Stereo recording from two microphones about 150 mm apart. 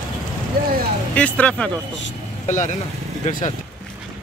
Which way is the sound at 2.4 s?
55° left (ahead or behind).